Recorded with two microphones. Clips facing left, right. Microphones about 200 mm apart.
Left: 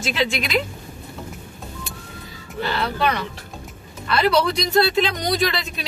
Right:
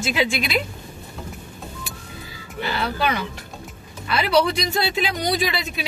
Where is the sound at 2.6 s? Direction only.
5° right (ahead or behind).